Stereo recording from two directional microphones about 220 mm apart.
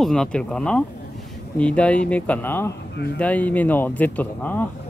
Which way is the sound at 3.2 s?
5° left (ahead or behind).